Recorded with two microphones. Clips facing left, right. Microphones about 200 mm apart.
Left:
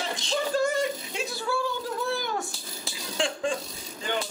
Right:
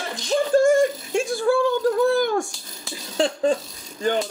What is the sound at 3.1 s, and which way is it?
Speech, 40° right (ahead or behind).